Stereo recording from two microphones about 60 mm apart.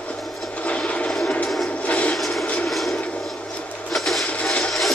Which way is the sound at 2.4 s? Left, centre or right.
Centre.